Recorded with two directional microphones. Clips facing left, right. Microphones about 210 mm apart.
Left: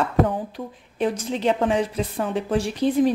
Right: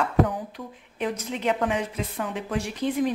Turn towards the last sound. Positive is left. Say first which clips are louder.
# left 6 dB
turn(degrees=35)  # may be behind; listen again after turning